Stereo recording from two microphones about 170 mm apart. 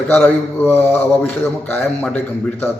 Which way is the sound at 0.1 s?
10° left (ahead or behind).